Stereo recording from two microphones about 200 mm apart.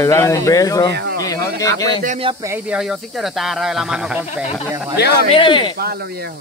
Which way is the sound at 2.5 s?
5° right (ahead or behind).